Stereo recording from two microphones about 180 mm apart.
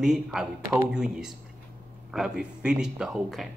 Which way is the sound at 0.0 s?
5° right (ahead or behind).